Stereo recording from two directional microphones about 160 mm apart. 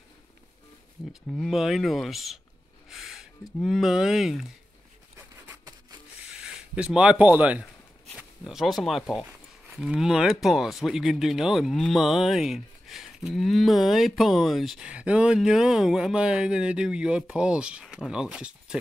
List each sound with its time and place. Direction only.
1.3 s speech: centre (ahead or behind)
5.1 s a sound: 20° right (ahead or behind)
6.2 s speech: 5° right (ahead or behind)